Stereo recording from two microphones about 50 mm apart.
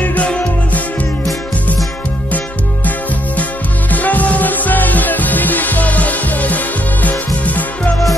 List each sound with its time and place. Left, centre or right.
3.9 s music: left